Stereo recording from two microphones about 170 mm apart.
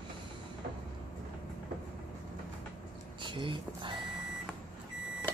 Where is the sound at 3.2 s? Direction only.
30° right (ahead or behind).